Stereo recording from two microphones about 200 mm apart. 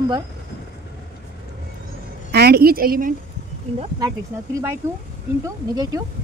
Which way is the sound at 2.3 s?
50° right (ahead or behind).